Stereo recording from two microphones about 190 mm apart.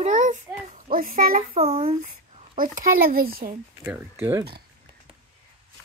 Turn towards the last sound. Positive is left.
turn(degrees=-10)  # may be behind; listen again after turning